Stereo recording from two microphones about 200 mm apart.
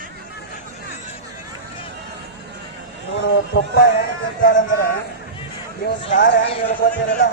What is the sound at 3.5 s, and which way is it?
Speech, 45° left (ahead or behind).